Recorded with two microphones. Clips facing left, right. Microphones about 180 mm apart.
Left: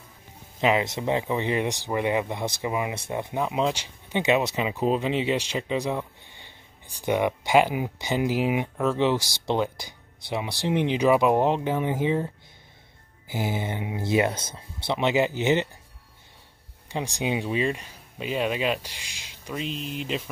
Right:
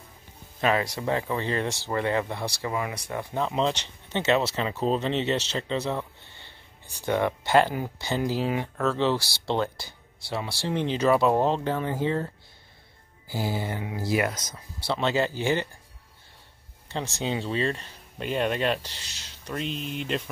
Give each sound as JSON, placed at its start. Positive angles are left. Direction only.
{"t": 0.6, "sound": "speech", "side_deg": 20}
{"t": 3.4, "sound": "speech", "side_deg": 10}
{"t": 13.3, "sound": "speech", "side_deg": 20}
{"t": 16.9, "sound": "speech", "side_deg": 15}